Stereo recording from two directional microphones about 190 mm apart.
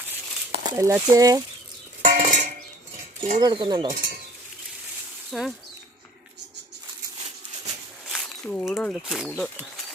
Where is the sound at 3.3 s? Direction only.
20° right (ahead or behind).